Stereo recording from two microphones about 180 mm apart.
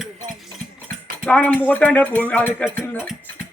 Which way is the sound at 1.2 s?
10° left (ahead or behind).